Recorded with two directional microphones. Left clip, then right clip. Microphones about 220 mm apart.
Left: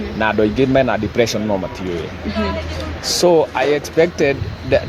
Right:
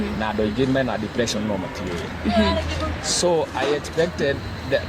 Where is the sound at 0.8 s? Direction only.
45° left (ahead or behind).